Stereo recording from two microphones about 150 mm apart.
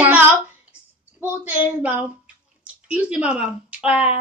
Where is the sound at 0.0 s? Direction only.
10° right (ahead or behind).